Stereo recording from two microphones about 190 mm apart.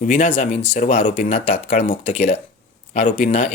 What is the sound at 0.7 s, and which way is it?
Speech, 40° left (ahead or behind).